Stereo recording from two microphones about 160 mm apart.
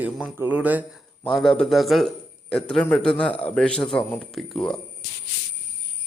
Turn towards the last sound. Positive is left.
turn(degrees=5)  # may be behind; listen again after turning